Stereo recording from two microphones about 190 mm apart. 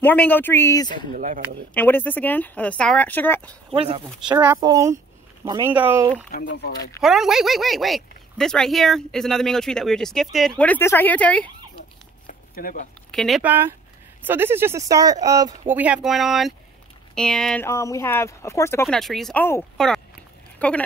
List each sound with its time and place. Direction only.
0.0 s speech: 10° left (ahead or behind)
1.1 s speech: 45° right (ahead or behind)
1.7 s speech: 10° left (ahead or behind)
3.7 s speech: 30° right (ahead or behind)
4.6 s speech: 20° right (ahead or behind)
5.7 s speech: 10° right (ahead or behind)
6.3 s speech: 65° left (ahead or behind)
7.0 s speech: centre (ahead or behind)
12.3 s a sound: 50° left (ahead or behind)
13.1 s speech: centre (ahead or behind)
13.4 s speech: 10° right (ahead or behind)
15.7 s speech: 5° right (ahead or behind)
17.6 s speech: 15° left (ahead or behind)
18.9 s speech: centre (ahead or behind)